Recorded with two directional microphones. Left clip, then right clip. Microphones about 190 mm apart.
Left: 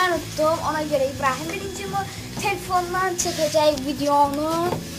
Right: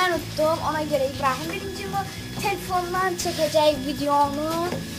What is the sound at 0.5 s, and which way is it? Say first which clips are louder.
Speech: left 1 dB; 5° right (ahead or behind).